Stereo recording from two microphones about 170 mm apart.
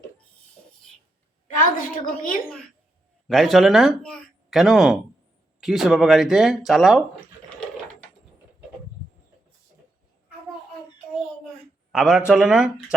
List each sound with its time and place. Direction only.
1.5 s a woman's voice: 55° left (ahead or behind)
3.2 s speech: centre (ahead or behind)
11.9 s speech: 5° right (ahead or behind)